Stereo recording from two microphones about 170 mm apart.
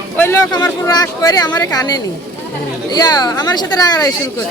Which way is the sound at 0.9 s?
25° left (ahead or behind).